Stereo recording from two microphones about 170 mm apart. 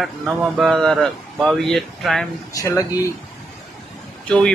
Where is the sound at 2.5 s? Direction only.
20° left (ahead or behind).